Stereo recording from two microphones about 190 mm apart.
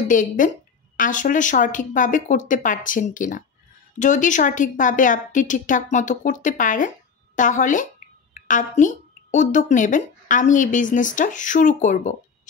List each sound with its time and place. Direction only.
0.1 s a woman's voice: 45° left (ahead or behind)